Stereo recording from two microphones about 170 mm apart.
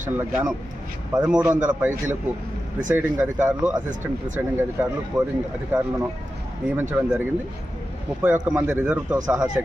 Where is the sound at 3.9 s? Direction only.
50° right (ahead or behind).